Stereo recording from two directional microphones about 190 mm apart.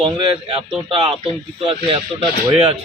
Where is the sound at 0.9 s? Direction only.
30° right (ahead or behind).